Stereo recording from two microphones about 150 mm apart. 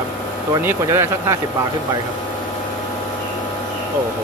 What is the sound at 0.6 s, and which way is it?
Speech, 15° right (ahead or behind).